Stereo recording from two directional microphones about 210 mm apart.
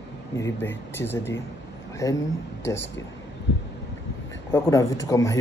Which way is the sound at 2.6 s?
60° left (ahead or behind).